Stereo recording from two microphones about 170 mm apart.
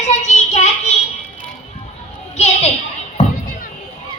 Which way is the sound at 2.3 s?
40° left (ahead or behind).